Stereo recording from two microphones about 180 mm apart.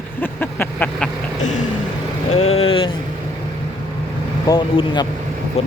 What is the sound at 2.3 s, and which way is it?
Vehicle, 35° left (ahead or behind).